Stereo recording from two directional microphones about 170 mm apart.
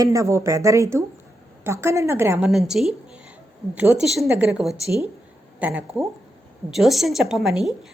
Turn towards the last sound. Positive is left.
turn(degrees=0)  # may be behind; listen again after turning